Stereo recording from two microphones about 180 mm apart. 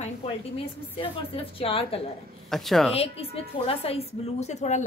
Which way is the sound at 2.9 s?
35° left (ahead or behind).